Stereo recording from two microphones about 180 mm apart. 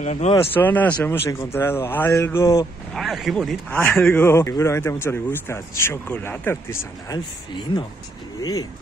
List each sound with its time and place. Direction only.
0.0 s speech: 40° left (ahead or behind)
0.5 s speech: 10° left (ahead or behind)
2.9 s speech: centre (ahead or behind)
3.8 s speech: 10° left (ahead or behind)
8.4 s speech: 20° left (ahead or behind)